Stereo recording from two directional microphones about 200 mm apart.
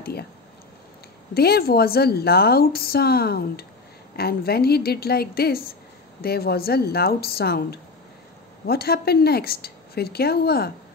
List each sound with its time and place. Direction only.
0.0 s speech: 50° left (ahead or behind)
1.3 s a woman's voice: 50° left (ahead or behind)